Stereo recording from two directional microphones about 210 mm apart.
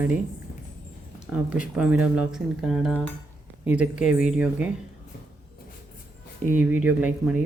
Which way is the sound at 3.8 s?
35° left (ahead or behind).